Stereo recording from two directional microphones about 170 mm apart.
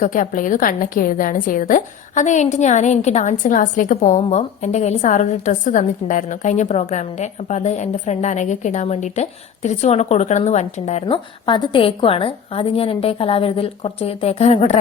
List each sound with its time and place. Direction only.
0.0 s a woman's voice: 50° left (ahead or behind)
11.4 s a woman's voice: 30° left (ahead or behind)